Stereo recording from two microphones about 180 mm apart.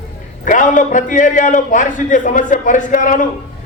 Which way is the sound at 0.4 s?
45° left (ahead or behind).